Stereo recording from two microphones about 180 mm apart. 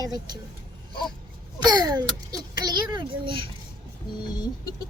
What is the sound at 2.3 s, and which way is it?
A child's voice, 20° right (ahead or behind).